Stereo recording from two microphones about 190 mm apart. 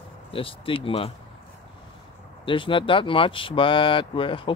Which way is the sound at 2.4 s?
25° left (ahead or behind).